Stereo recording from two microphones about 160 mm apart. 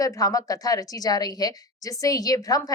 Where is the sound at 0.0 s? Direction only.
20° left (ahead or behind).